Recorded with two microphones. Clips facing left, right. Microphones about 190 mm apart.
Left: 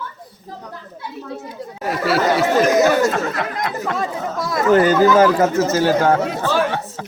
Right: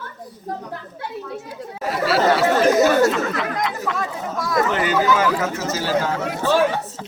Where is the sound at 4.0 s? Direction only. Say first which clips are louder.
Left 3 dB; 25° left (ahead or behind).